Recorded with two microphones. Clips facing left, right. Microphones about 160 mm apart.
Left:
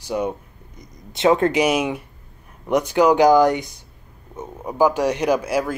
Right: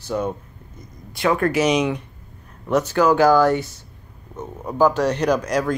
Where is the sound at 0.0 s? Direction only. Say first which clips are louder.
Even; 15° left (ahead or behind).